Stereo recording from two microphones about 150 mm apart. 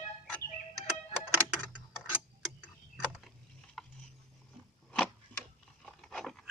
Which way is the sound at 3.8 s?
5° left (ahead or behind).